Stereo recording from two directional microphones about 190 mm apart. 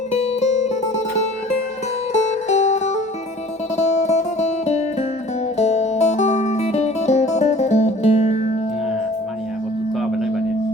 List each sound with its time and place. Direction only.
0.1 s music: 35° left (ahead or behind)
2.5 s music: 35° left (ahead or behind)
10.0 s tuning fork: centre (ahead or behind)